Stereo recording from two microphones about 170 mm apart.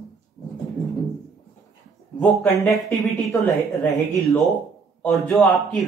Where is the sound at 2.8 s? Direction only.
15° left (ahead or behind).